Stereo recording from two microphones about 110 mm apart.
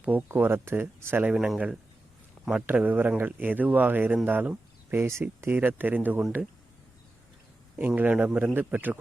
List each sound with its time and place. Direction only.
0.0 s speech: 15° right (ahead or behind)
1.3 s speech: 5° right (ahead or behind)
7.8 s speech: 15° right (ahead or behind)